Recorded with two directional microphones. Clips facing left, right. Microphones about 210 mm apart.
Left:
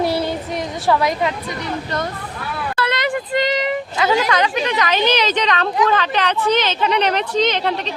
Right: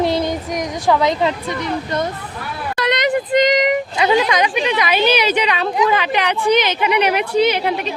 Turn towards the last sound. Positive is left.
turn(degrees=-10)  # may be behind; listen again after turning